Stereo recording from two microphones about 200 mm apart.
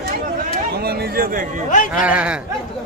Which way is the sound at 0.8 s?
50° right (ahead or behind).